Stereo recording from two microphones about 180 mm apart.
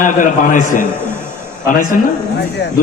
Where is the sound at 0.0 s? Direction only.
45° left (ahead or behind).